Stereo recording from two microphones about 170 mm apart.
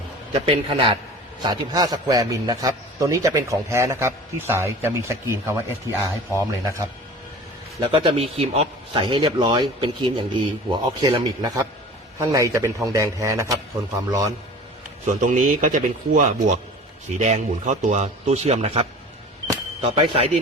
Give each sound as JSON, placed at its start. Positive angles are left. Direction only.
{"t": 0.4, "sound": "a man's voice", "side_deg": -35}
{"t": 7.8, "sound": "a man's voice", "side_deg": -30}
{"t": 15.0, "sound": "a man's voice", "side_deg": -50}
{"t": 20.0, "sound": "a man's voice", "side_deg": -35}